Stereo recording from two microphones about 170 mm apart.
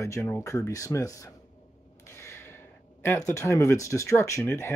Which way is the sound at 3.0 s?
15° left (ahead or behind).